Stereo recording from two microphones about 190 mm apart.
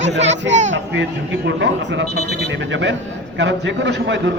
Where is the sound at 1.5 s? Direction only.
70° right (ahead or behind).